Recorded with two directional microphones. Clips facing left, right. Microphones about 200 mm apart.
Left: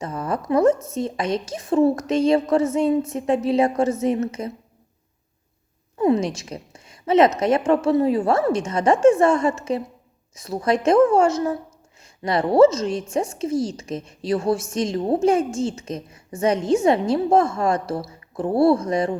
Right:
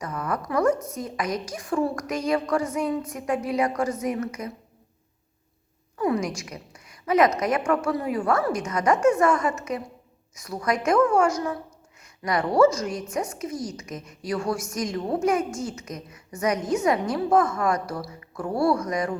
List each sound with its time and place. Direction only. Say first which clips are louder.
0.0 s a woman's voice: left 3 dB; 25° left (ahead or behind)
6.0 s a woman's voice: left 5 dB; 25° left (ahead or behind)